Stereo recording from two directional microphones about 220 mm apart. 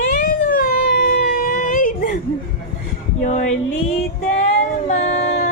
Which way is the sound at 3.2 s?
35° left (ahead or behind).